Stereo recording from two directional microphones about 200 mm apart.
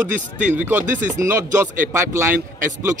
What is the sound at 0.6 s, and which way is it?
A man's voice, 10° right (ahead or behind).